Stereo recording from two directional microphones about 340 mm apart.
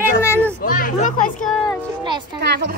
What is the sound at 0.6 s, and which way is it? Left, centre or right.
Speech, left.